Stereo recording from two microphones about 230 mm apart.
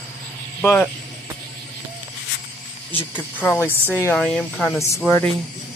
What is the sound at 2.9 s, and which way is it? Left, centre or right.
Speech, centre.